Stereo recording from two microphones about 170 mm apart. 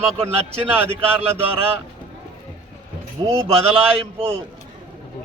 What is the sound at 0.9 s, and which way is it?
Speech, 35° right (ahead or behind).